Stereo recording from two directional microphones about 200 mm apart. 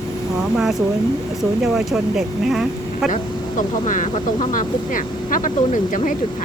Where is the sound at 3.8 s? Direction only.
40° left (ahead or behind).